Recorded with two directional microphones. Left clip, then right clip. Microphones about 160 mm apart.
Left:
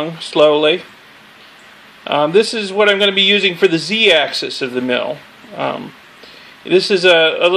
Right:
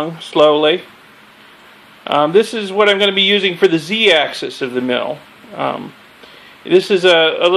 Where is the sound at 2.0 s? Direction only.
Centre (ahead or behind).